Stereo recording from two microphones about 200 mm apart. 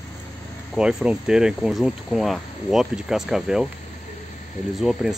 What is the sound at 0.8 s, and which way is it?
Speech, 5° right (ahead or behind).